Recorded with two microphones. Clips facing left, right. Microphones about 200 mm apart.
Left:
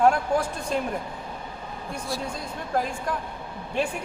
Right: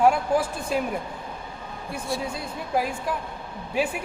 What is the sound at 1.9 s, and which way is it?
A woman's voice, 5° right (ahead or behind).